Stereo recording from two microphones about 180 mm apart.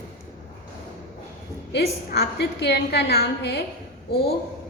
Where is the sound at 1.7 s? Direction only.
65° left (ahead or behind).